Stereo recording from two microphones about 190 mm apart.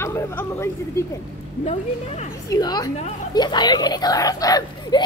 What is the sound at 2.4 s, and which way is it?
Speech, 20° left (ahead or behind).